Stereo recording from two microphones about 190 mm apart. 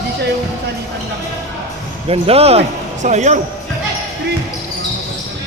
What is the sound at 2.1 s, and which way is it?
Speech, 30° right (ahead or behind).